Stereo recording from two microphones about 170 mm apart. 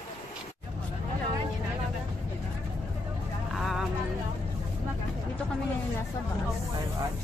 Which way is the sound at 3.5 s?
Centre (ahead or behind).